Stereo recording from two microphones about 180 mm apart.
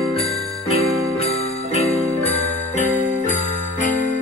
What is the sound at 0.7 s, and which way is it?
Jingle bell, 35° left (ahead or behind).